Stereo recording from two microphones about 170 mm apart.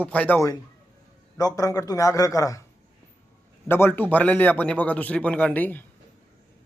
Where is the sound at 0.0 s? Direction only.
10° left (ahead or behind).